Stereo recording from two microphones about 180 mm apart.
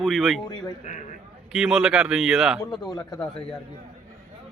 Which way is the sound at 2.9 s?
20° left (ahead or behind).